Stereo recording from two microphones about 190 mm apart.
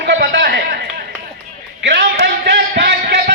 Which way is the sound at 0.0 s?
60° right (ahead or behind).